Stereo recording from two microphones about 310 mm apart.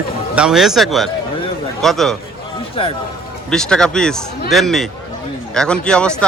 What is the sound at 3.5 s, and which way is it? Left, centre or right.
Speech, centre.